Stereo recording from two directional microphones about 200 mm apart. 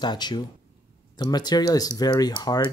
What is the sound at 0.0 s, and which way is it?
Speech, 20° left (ahead or behind).